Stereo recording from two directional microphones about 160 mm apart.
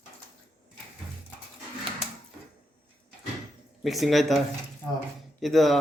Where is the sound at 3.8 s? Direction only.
Centre (ahead or behind).